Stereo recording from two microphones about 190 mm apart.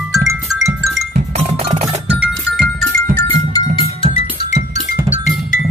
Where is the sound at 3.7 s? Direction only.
30° left (ahead or behind).